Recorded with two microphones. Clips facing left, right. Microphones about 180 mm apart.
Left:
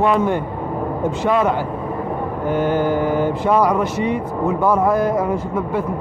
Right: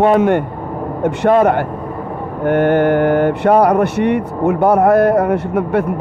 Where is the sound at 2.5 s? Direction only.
65° right (ahead or behind).